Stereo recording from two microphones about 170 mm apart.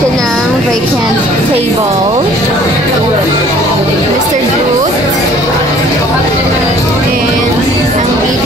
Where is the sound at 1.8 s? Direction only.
20° right (ahead or behind).